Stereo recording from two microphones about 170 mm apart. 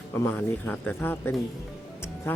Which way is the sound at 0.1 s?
10° left (ahead or behind).